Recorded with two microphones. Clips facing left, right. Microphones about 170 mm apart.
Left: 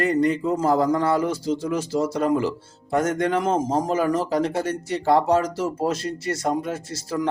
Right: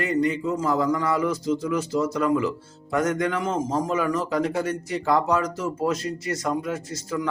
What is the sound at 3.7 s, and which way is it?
Speech, 30° left (ahead or behind).